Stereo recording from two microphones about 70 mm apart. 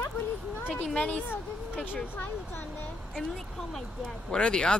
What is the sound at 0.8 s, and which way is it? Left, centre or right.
Speech, centre.